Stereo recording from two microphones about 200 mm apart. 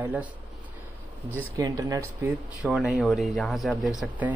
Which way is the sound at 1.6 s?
15° right (ahead or behind).